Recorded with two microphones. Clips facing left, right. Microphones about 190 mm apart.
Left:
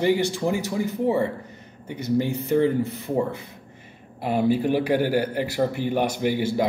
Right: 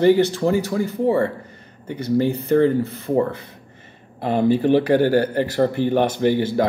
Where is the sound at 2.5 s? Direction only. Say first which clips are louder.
Right 3 dB; 15° left (ahead or behind).